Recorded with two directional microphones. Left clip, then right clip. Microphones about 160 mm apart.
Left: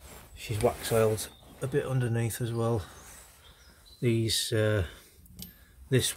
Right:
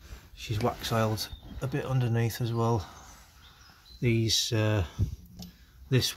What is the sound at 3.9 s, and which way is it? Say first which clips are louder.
Speech: right 1 dB; 15° right (ahead or behind).